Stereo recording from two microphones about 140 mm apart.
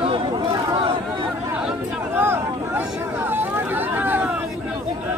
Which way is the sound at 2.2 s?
15° right (ahead or behind).